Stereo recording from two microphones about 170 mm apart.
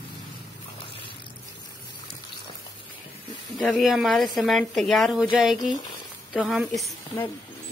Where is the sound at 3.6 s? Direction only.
Centre (ahead or behind).